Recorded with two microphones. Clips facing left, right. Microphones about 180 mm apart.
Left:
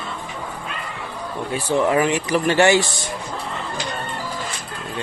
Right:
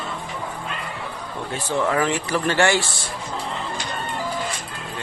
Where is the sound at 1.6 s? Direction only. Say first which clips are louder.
Left 3 dB; 20° left (ahead or behind).